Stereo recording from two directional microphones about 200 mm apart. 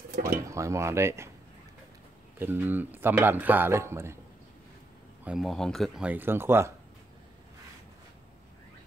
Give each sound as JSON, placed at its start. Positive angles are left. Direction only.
{"t": 0.1, "sound": "a sound", "side_deg": -45}
{"t": 0.5, "sound": "speech", "side_deg": -15}
{"t": 2.3, "sound": "speech", "side_deg": -10}
{"t": 5.2, "sound": "speech", "side_deg": 0}